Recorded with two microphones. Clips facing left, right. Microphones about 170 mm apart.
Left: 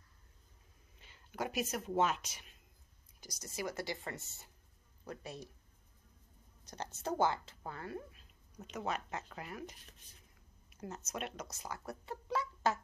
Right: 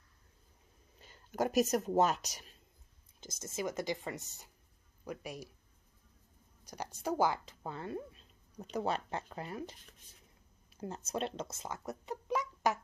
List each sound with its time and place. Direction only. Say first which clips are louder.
0.9 s speech: right 6 dB; 40° right (ahead or behind)
3.2 s speech: right 3 dB; 25° right (ahead or behind)
6.6 s a woman's voice: right 2 dB; 10° right (ahead or behind)